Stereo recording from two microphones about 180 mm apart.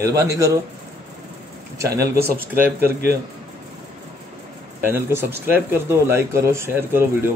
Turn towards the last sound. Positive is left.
turn(degrees=-15)  # may be behind; listen again after turning